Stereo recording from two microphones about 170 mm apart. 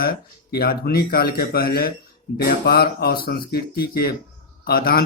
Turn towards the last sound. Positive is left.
turn(degrees=60)  # may be behind; listen again after turning